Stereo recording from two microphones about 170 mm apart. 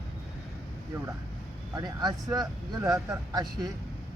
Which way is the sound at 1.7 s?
25° right (ahead or behind).